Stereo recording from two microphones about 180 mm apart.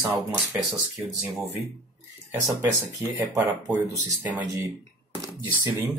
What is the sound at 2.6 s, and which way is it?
Speech, 15° right (ahead or behind).